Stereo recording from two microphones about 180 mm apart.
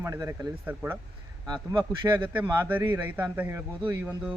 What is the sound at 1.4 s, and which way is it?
Speech, 25° right (ahead or behind).